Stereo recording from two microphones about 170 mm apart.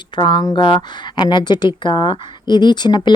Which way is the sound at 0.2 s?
25° left (ahead or behind).